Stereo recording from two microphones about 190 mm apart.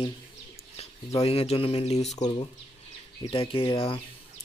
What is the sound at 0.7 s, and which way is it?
Speech, 30° left (ahead or behind).